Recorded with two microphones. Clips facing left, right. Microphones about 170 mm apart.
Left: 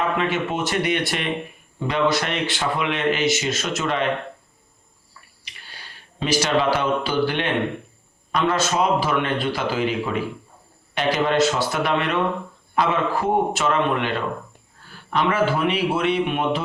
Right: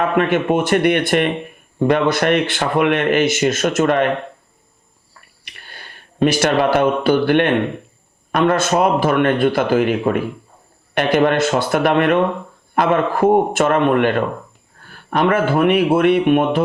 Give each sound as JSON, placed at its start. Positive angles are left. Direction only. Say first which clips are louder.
{"t": 0.2, "sound": "speech", "louder": "right 7 dB", "side_deg": -55}
{"t": 5.1, "sound": "a sound", "louder": "right 2 dB", "side_deg": -55}
{"t": 8.3, "sound": "a man's voice", "louder": "right 6 dB", "side_deg": -55}